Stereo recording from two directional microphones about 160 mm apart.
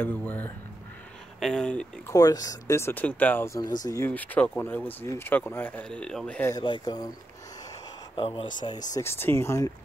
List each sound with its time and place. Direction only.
0.0 s speech: 10° left (ahead or behind)
2.0 s speech: 20° left (ahead or behind)
6.5 s speech: 25° left (ahead or behind)
8.2 s speech: 35° left (ahead or behind)
8.9 s speech: 15° left (ahead or behind)